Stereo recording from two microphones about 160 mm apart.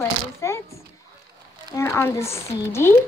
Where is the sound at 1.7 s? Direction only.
15° left (ahead or behind).